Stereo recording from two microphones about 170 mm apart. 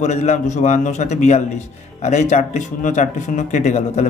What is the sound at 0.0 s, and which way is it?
A man's voice, 40° left (ahead or behind).